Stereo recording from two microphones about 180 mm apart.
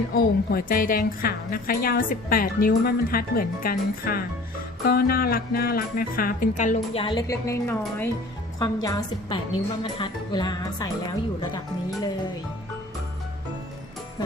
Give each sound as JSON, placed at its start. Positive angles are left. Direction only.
{"t": 0.1, "sound": "a woman's voice", "side_deg": 55}
{"t": 7.0, "sound": "a woman's voice", "side_deg": 25}